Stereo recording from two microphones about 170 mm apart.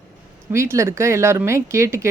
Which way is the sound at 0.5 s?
15° right (ahead or behind).